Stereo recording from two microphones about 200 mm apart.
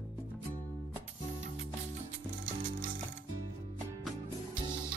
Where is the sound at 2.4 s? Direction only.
45° right (ahead or behind).